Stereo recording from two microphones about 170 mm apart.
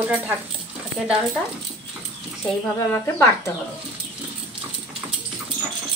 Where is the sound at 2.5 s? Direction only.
15° left (ahead or behind).